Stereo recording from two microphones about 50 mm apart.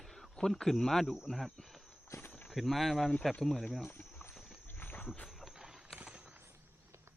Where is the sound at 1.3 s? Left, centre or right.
Centre.